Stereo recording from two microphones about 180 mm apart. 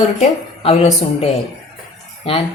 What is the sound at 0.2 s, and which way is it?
A woman's voice, 35° left (ahead or behind).